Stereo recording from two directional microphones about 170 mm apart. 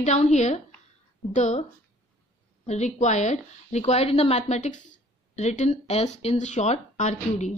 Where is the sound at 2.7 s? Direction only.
45° left (ahead or behind).